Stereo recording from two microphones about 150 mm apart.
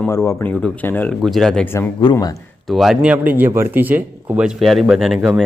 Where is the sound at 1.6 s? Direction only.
15° left (ahead or behind).